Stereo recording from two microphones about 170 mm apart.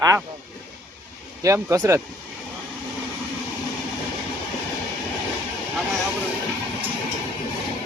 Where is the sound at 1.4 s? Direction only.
20° right (ahead or behind).